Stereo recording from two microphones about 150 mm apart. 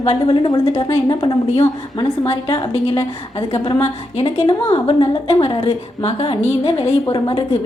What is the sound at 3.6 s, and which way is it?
Speech, 25° left (ahead or behind).